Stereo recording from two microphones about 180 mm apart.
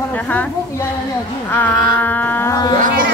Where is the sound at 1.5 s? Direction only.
10° left (ahead or behind).